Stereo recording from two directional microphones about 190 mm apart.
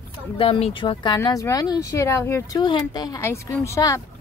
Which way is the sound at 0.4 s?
30° left (ahead or behind).